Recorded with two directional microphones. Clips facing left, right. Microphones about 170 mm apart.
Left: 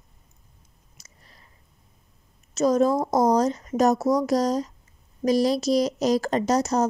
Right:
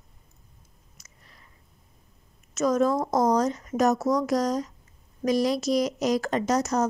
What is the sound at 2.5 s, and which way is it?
A woman's voice, 30° left (ahead or behind).